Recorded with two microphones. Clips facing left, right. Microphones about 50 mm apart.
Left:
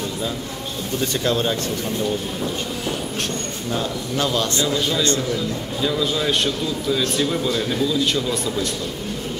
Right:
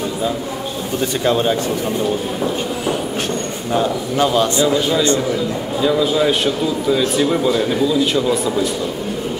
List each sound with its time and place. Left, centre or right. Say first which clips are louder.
1.2 s speech: right 6 dB; right
3.7 s a man's voice: right 7 dB; centre